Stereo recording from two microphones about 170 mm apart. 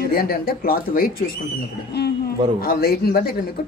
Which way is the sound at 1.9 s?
70° left (ahead or behind).